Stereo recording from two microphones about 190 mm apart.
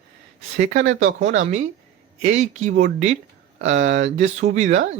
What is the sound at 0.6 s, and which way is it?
Speech, 80° right.